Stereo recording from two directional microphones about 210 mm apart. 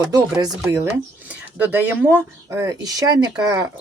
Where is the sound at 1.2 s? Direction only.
10° right (ahead or behind).